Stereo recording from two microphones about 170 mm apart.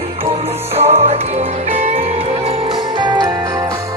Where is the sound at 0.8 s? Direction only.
35° right (ahead or behind).